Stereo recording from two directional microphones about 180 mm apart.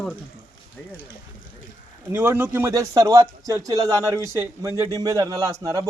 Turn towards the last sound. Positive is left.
turn(degrees=-20)  # may be behind; listen again after turning